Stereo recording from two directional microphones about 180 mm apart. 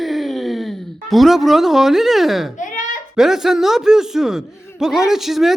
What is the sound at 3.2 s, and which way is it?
Speech, centre (ahead or behind).